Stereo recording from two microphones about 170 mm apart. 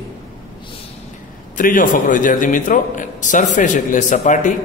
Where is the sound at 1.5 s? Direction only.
50° left (ahead or behind).